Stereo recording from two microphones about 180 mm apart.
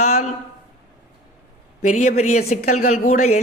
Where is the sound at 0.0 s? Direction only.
35° left (ahead or behind).